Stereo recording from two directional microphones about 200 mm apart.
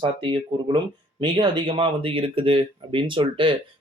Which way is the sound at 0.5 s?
20° right (ahead or behind).